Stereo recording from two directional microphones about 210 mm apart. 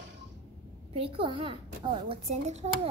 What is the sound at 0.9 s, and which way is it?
A child's voice, 25° right (ahead or behind).